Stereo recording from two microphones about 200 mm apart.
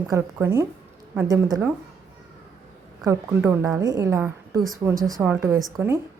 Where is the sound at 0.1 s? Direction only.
10° right (ahead or behind).